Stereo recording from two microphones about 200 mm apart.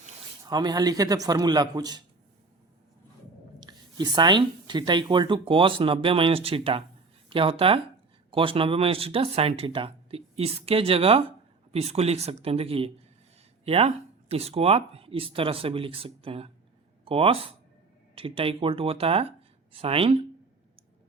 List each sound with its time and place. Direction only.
0.4 s speech: 20° right (ahead or behind)
3.6 s speech: 20° right (ahead or behind)